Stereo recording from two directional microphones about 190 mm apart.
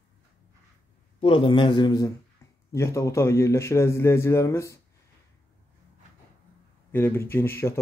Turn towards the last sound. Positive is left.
turn(degrees=10)  # may be behind; listen again after turning